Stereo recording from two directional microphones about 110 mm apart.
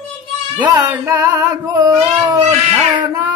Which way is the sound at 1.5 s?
30° right (ahead or behind).